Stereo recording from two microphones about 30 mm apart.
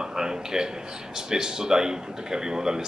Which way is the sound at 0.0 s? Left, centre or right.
Centre.